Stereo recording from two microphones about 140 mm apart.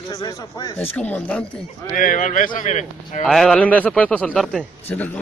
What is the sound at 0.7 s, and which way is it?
Speech, 10° left (ahead or behind).